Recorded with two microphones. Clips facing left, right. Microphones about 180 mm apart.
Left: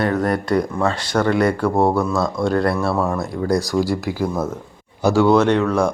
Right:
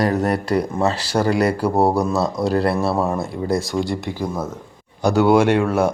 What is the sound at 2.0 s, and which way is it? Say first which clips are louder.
Speech: even; 35° right (ahead or behind).